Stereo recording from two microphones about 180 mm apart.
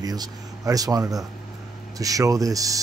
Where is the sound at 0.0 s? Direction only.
20° right (ahead or behind).